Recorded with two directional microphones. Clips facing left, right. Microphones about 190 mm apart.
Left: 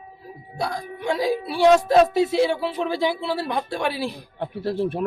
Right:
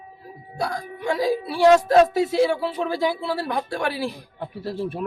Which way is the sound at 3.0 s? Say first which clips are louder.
Even; 20° left (ahead or behind).